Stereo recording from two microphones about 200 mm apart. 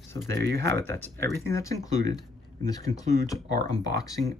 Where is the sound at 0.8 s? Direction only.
10° left (ahead or behind).